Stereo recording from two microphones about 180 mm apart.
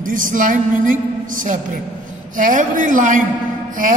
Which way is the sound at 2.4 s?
45° right (ahead or behind).